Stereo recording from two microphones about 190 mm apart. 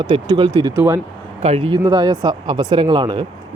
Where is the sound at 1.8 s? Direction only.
20° right (ahead or behind).